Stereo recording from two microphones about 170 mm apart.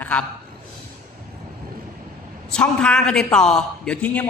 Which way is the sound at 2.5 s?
5° left (ahead or behind).